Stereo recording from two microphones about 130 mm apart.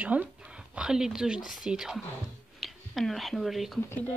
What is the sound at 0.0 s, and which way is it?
Speech, 10° right (ahead or behind).